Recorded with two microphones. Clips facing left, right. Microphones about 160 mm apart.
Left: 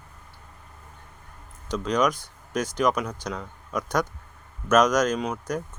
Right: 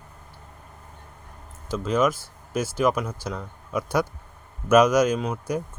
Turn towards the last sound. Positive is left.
turn(degrees=-5)  # may be behind; listen again after turning